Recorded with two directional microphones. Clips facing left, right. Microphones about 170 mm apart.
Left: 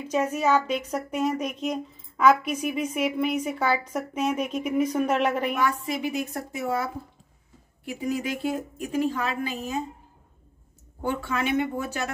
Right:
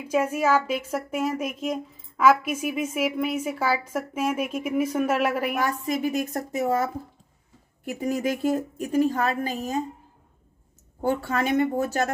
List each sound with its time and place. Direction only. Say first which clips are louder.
0.0 s speech: right 1 dB; 10° right (ahead or behind)
5.6 s a woman's voice: right 1 dB; 40° right (ahead or behind)
11.0 s speech: right 3 dB; 40° right (ahead or behind)